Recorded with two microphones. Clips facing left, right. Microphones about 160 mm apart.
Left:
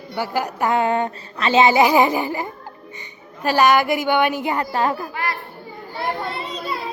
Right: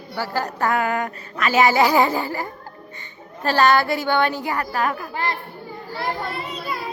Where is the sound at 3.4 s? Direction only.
15° left (ahead or behind).